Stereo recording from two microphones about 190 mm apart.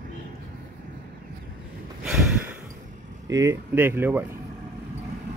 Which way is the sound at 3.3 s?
15° right (ahead or behind).